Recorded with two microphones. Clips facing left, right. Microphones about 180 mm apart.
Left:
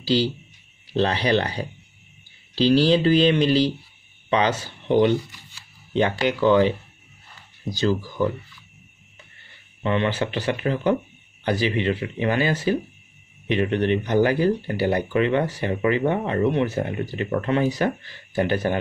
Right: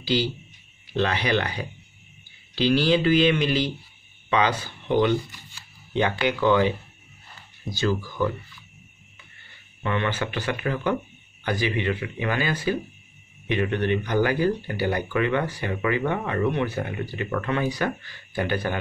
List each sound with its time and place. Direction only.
0.0 s speech: 35° left (ahead or behind)
9.8 s speech: 30° left (ahead or behind)